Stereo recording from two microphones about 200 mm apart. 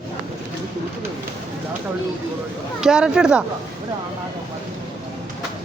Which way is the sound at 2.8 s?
5° right (ahead or behind).